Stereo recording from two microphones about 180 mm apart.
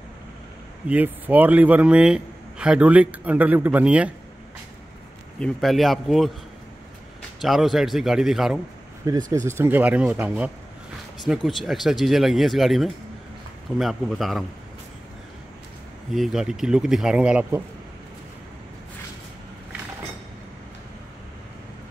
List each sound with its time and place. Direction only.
0.8 s a man's voice: 10° right (ahead or behind)
5.4 s a man's voice: centre (ahead or behind)
9.0 s a man's voice: 20° right (ahead or behind); by 14.4 s centre (ahead or behind)
16.1 s speech: centre (ahead or behind)